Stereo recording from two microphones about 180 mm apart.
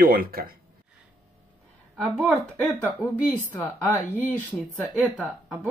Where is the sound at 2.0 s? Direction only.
5° right (ahead or behind).